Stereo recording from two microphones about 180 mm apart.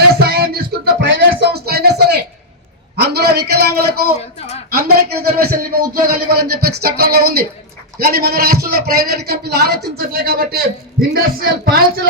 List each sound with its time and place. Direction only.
0.1 s music: 60° right (ahead or behind)
2.9 s a man's voice: 65° right (ahead or behind)